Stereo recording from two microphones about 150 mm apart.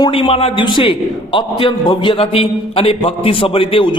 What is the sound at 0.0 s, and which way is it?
A man's voice, 35° left (ahead or behind).